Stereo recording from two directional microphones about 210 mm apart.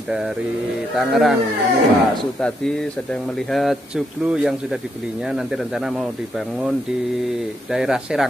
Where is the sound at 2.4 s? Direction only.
5° left (ahead or behind).